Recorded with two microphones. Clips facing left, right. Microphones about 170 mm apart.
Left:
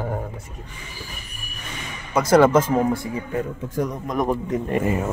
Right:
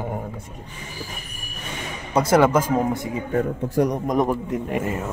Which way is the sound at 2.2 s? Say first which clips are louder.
Right 1 dB; 30° right (ahead or behind).